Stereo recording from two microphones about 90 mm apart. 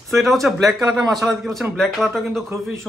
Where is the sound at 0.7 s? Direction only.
45° right (ahead or behind).